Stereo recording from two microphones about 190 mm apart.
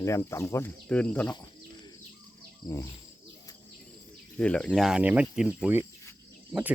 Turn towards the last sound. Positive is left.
turn(degrees=-10)  # may be behind; listen again after turning